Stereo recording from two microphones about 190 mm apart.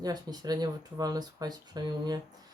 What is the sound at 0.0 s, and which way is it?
Speech, 20° right (ahead or behind).